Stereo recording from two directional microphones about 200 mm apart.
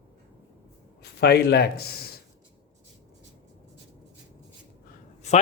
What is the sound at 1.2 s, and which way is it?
Speech, 55° left (ahead or behind).